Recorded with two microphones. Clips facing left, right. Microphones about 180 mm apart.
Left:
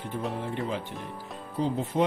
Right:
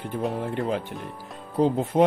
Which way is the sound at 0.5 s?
55° right (ahead or behind).